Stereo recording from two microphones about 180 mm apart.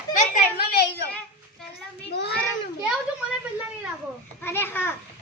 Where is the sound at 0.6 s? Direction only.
60° left (ahead or behind).